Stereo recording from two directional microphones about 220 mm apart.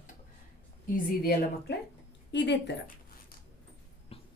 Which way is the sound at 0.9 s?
45° left (ahead or behind).